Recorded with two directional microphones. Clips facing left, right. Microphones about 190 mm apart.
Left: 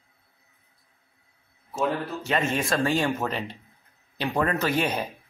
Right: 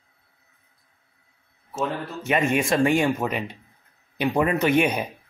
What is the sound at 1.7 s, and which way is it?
Speech, 20° right (ahead or behind).